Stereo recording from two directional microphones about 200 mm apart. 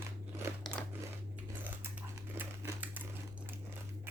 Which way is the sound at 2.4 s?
10° right (ahead or behind).